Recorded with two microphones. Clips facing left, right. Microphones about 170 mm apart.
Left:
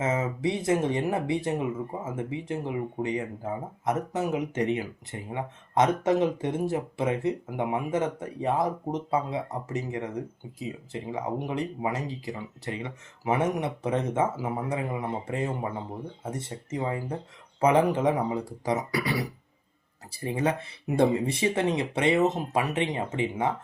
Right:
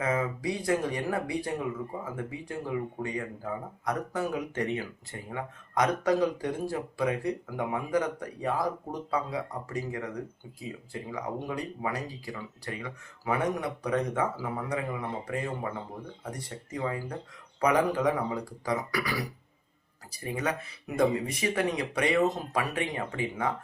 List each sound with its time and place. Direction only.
0.0 s speech: 25° left (ahead or behind)